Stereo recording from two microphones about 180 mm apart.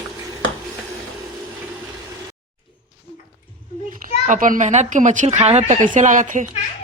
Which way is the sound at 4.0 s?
50° right (ahead or behind).